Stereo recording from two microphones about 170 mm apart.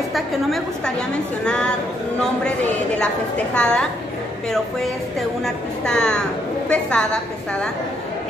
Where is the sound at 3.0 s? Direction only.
5° left (ahead or behind).